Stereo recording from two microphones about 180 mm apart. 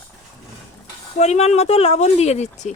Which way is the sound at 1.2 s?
35° left (ahead or behind).